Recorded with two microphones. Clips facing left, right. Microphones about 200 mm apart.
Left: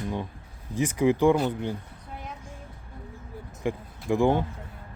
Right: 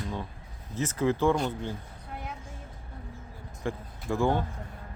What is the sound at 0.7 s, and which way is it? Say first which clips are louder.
Speech: left 4 dB; 15° left (ahead or behind).